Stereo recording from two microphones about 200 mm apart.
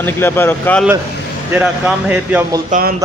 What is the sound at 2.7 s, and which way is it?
Speech, 45° right (ahead or behind).